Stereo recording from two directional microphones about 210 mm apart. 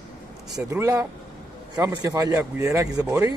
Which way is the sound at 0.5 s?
15° right (ahead or behind).